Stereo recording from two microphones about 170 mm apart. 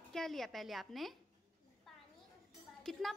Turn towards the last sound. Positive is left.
turn(degrees=0)  # may be behind; listen again after turning